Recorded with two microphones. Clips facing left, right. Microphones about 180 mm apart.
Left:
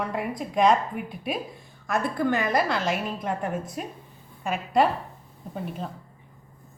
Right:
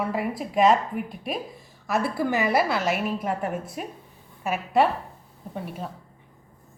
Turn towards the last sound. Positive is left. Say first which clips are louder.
# left 1 dB
turn(degrees=-5)  # may be behind; listen again after turning